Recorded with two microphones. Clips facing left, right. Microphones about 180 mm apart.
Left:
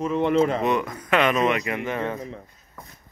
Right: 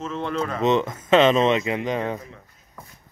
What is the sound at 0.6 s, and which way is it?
Speech, 25° right (ahead or behind).